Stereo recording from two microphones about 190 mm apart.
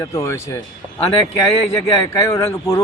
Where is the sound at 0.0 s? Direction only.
15° left (ahead or behind).